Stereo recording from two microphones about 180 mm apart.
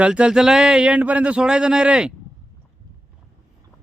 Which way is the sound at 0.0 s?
5° right (ahead or behind).